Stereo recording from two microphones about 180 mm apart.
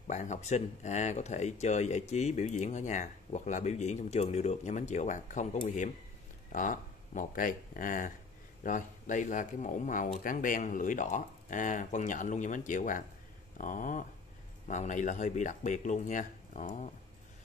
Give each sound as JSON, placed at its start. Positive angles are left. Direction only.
{"t": 0.0, "sound": "speech", "side_deg": 40}